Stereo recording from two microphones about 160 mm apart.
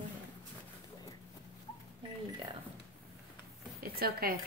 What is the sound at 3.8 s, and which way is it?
Speech, 70° right (ahead or behind).